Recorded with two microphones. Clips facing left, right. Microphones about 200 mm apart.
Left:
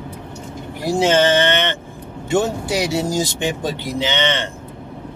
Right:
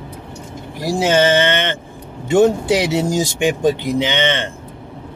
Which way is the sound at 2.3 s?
20° right (ahead or behind).